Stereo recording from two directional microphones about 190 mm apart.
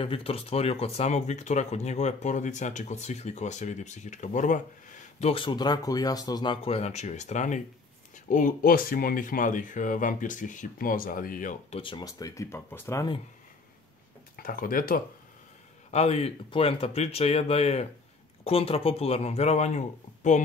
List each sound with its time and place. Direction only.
0.0 s speech: 30° left (ahead or behind)
5.2 s speech: 25° left (ahead or behind); by 11.5 s 45° left (ahead or behind)
11.7 s speech: 25° left (ahead or behind)
14.3 s speech: 50° left (ahead or behind)
15.9 s speech: 35° left (ahead or behind)